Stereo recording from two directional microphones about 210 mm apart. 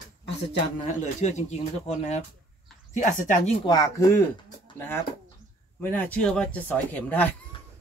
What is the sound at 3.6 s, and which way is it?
Speech, 15° left (ahead or behind).